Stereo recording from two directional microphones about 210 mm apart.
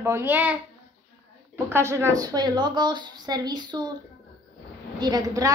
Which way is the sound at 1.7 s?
10° right (ahead or behind).